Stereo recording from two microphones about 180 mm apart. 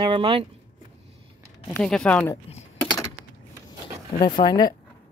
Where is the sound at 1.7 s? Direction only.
5° left (ahead or behind).